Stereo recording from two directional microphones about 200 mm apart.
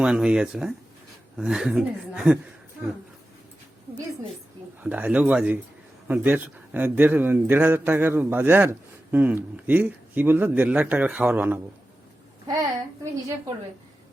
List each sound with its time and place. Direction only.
0.0 s speech: 5° right (ahead or behind)
4.8 s a man's voice: 5° right (ahead or behind)